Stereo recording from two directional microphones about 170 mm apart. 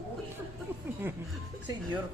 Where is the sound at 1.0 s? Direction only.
10° right (ahead or behind).